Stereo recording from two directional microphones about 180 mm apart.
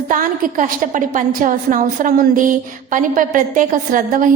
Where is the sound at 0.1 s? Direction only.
50° right (ahead or behind).